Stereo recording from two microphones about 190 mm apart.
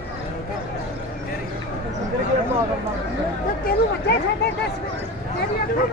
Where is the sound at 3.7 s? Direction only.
60° left (ahead or behind).